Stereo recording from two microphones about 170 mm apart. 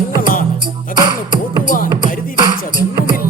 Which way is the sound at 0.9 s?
25° right (ahead or behind).